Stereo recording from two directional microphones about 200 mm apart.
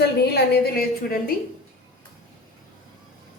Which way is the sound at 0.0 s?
55° left (ahead or behind).